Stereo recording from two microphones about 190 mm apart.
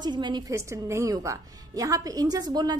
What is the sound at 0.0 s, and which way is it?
A woman's voice, 20° right (ahead or behind).